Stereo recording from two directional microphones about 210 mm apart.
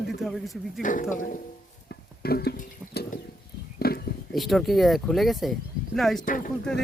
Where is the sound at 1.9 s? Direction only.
50° left (ahead or behind).